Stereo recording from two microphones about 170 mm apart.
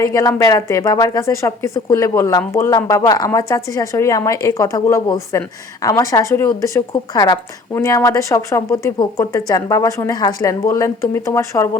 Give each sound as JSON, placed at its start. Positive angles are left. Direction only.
{"t": 0.1, "sound": "a woman's voice", "side_deg": 20}